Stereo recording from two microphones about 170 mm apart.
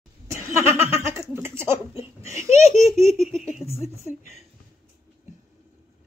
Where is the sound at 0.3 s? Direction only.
15° right (ahead or behind).